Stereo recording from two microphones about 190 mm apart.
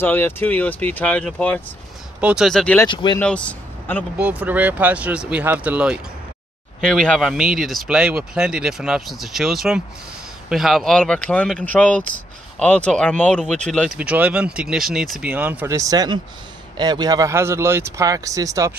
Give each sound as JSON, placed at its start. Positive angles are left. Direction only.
{"t": 0.0, "sound": "speech", "side_deg": 10}
{"t": 2.1, "sound": "speech", "side_deg": -5}
{"t": 2.9, "sound": "speech", "side_deg": 25}
{"t": 3.2, "sound": "speech", "side_deg": 5}
{"t": 4.2, "sound": "speech", "side_deg": -5}